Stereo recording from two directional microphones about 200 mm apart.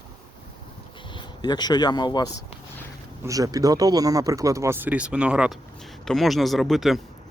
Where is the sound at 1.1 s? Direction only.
20° left (ahead or behind).